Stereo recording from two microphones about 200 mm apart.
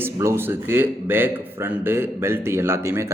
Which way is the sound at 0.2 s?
10° right (ahead or behind).